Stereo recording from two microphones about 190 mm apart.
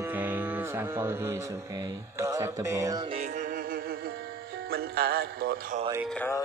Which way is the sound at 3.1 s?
40° right (ahead or behind).